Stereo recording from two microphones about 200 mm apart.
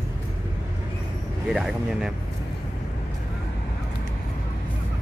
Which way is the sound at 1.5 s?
Centre (ahead or behind).